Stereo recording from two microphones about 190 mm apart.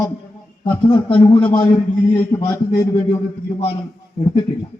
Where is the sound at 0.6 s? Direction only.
25° left (ahead or behind).